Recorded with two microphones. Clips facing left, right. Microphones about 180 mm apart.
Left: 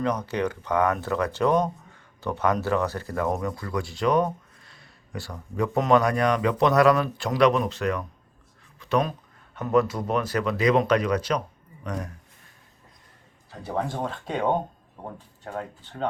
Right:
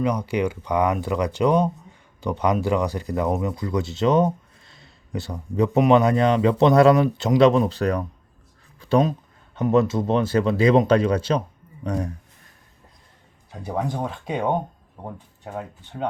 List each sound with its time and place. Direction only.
0.0 s speech: 10° right (ahead or behind); by 12.1 s 30° right (ahead or behind)
13.7 s speech: 10° right (ahead or behind)